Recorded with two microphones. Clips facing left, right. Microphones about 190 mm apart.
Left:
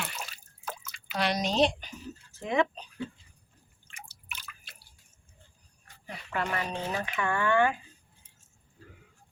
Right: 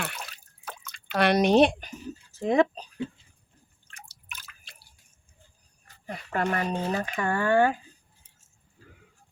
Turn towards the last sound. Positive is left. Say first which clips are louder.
# right 3 dB
turn(degrees=-40)  # may be behind; listen again after turning